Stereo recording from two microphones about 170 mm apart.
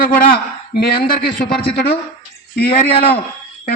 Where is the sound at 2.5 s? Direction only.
65° left (ahead or behind).